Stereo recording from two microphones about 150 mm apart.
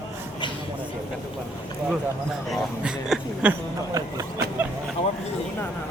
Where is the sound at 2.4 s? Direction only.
Centre (ahead or behind).